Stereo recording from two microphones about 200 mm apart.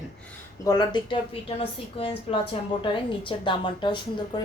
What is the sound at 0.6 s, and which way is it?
A woman's voice, 20° left (ahead or behind).